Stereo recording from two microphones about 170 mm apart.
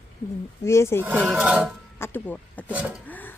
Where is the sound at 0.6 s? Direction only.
15° left (ahead or behind).